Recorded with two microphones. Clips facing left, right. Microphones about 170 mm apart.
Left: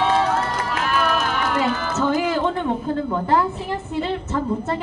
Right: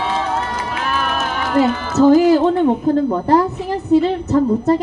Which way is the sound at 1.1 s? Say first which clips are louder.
Right 4 dB; 40° right (ahead or behind).